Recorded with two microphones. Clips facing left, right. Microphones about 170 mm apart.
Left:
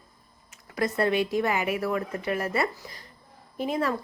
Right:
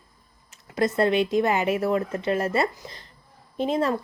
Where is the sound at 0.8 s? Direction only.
25° right (ahead or behind).